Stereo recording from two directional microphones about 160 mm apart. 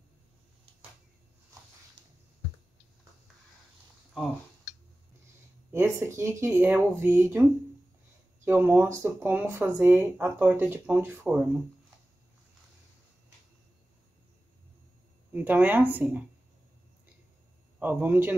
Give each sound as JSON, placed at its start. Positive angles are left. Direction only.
{"t": 5.7, "sound": "speech", "side_deg": -15}
{"t": 8.5, "sound": "speech", "side_deg": -10}
{"t": 15.3, "sound": "speech", "side_deg": -10}
{"t": 17.7, "sound": "a man's voice", "side_deg": -10}